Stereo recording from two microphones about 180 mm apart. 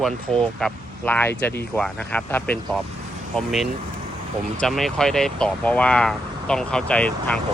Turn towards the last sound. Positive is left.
turn(degrees=5)  # may be behind; listen again after turning